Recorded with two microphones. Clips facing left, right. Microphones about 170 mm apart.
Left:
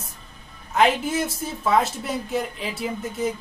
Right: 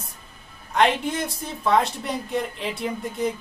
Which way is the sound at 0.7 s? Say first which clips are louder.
Left 1 dB; 5° left (ahead or behind).